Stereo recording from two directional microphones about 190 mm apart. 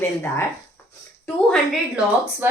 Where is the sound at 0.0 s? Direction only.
15° left (ahead or behind).